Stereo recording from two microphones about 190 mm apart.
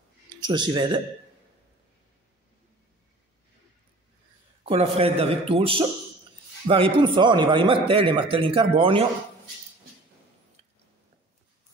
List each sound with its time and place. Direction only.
0.4 s a man's voice: 25° right (ahead or behind)
4.6 s a man's voice: 30° right (ahead or behind)